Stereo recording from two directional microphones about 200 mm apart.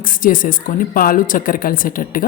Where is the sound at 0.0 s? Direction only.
45° left (ahead or behind).